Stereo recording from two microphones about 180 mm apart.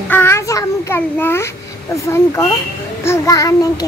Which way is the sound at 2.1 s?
15° left (ahead or behind).